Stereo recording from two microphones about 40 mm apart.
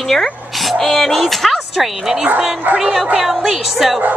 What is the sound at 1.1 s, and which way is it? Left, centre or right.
A woman's voice, centre.